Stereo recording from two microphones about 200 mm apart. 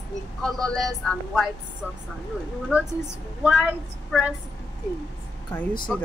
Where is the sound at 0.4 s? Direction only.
5° left (ahead or behind).